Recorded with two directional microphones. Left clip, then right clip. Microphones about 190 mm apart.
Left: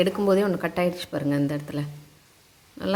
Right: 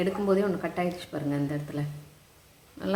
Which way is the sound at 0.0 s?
50° left (ahead or behind).